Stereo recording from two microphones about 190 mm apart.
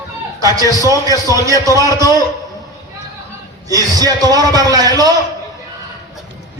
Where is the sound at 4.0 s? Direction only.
20° right (ahead or behind).